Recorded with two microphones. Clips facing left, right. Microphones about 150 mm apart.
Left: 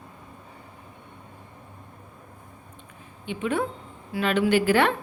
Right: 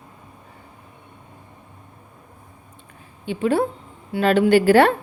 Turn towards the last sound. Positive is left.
turn(degrees=-35)  # may be behind; listen again after turning